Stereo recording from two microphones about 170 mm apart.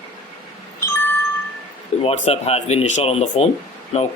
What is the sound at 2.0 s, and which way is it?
Speech, 40° left (ahead or behind).